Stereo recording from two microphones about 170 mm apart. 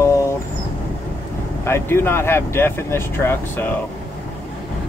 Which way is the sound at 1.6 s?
15° left (ahead or behind).